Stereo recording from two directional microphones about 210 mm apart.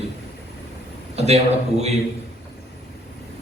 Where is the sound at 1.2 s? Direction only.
30° right (ahead or behind).